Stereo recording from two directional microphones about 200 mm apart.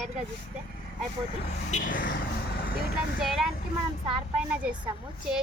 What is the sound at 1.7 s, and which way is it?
Speech, 40° left (ahead or behind).